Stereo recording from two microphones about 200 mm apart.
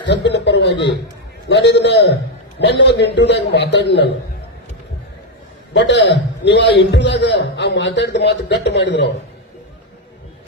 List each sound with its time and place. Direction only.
0.3 s a man's voice: 60° left (ahead or behind)
5.7 s a man's voice: 60° left (ahead or behind)